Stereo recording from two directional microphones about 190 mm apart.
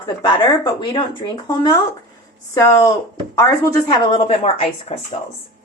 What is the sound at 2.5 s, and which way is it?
A woman's voice, 15° left (ahead or behind).